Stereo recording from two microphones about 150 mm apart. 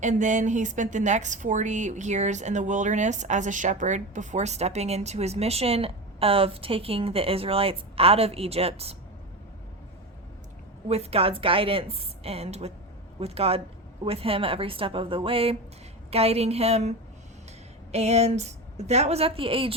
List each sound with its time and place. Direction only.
0.0 s a woman's voice: 55° right (ahead or behind)
10.8 s a woman's voice: 45° right (ahead or behind)
17.9 s a woman's voice: 45° right (ahead or behind)